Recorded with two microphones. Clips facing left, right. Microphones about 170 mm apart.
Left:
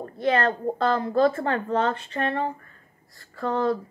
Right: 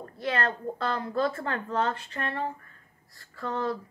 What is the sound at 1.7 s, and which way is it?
Speech, 70° left (ahead or behind).